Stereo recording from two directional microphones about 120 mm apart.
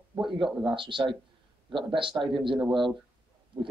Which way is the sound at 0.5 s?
5° right (ahead or behind).